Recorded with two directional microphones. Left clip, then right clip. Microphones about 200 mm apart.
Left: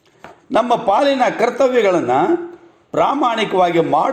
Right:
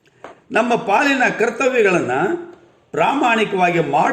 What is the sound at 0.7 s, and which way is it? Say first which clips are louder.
A man's voice: left 2 dB; 20° left (ahead or behind).